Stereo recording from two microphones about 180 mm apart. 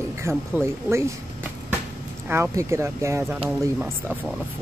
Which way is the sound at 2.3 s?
15° right (ahead or behind).